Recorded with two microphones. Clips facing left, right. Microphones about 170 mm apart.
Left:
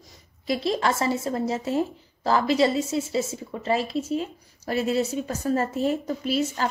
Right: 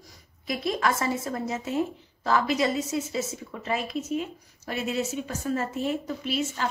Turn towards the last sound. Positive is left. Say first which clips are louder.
# left 4 dB
turn(degrees=40)  # may be behind; listen again after turning